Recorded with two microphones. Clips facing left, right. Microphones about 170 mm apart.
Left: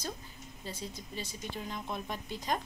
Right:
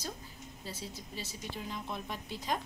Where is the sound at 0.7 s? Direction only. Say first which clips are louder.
Left 2 dB; 5° right (ahead or behind).